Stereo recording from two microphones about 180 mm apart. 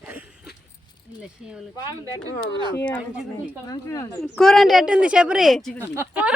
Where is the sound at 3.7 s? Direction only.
20° left (ahead or behind).